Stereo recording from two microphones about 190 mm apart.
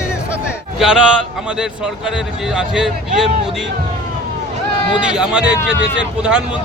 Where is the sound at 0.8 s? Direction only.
5° right (ahead or behind).